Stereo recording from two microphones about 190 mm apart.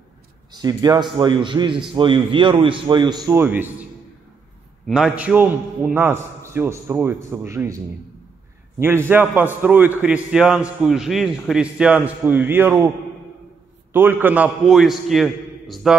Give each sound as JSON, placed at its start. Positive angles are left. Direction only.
{"t": 0.5, "sound": "a man's voice", "side_deg": -20}
{"t": 4.8, "sound": "a man's voice", "side_deg": -5}
{"t": 13.9, "sound": "a man's voice", "side_deg": -10}